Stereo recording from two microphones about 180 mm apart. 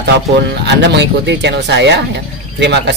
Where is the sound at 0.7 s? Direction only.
75° right (ahead or behind).